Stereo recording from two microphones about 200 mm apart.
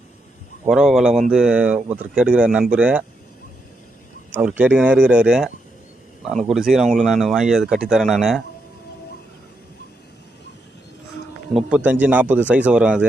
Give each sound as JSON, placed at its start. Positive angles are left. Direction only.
{"t": 0.7, "sound": "speech", "side_deg": 0}
{"t": 4.3, "sound": "speech", "side_deg": -10}
{"t": 11.5, "sound": "speech", "side_deg": -5}